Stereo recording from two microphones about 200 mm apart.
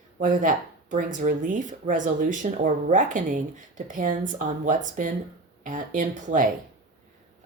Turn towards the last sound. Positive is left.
turn(degrees=-40)  # may be behind; listen again after turning